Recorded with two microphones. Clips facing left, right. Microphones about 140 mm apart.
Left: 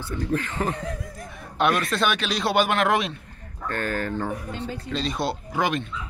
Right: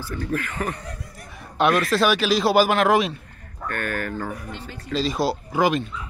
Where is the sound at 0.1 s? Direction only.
20° left (ahead or behind).